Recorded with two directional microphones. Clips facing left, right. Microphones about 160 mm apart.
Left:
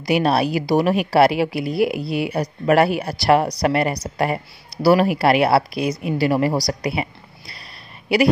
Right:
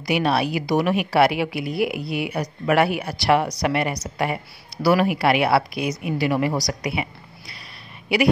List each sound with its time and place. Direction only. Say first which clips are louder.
0.0 s a woman's voice: left 3 dB; 40° left (ahead or behind)